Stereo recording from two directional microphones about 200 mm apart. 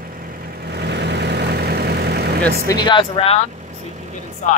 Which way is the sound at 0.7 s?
55° right (ahead or behind).